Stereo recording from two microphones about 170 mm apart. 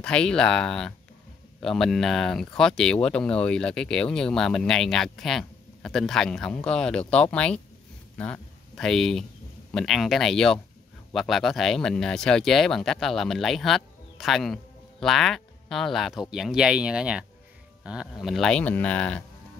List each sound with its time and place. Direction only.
0.0 s speech: 5° left (ahead or behind)